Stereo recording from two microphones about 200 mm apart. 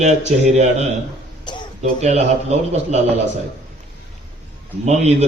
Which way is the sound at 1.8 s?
35° right (ahead or behind).